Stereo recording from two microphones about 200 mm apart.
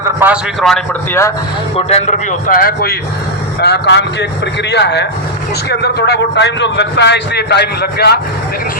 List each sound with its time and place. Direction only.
0.2 s a man's voice: 10° right (ahead or behind)
0.6 s a man's voice: centre (ahead or behind)
1.7 s speech: 30° left (ahead or behind)
2.5 s a man's voice: 45° left (ahead or behind)